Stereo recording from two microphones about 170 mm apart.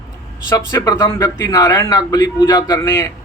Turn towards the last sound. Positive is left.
turn(degrees=20)  # may be behind; listen again after turning